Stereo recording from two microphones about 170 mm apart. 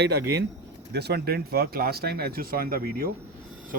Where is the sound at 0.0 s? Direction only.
75° right (ahead or behind); by 3.1 s 60° right (ahead or behind).